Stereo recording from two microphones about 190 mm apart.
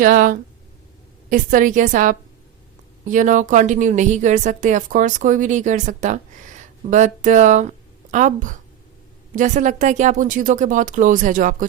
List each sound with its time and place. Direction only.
0.0 s speech: 45° right (ahead or behind)